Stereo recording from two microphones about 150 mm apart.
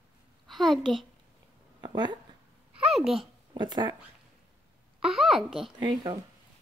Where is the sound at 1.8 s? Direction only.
30° right (ahead or behind).